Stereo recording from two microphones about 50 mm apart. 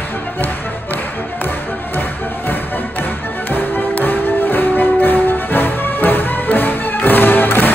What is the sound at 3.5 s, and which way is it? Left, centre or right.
Music, left.